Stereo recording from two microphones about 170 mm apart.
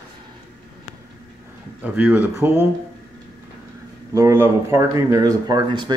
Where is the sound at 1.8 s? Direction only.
10° right (ahead or behind).